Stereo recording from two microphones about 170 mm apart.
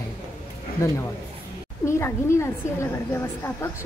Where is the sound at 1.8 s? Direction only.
15° left (ahead or behind).